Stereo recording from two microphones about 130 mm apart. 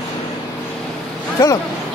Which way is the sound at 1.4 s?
30° left (ahead or behind).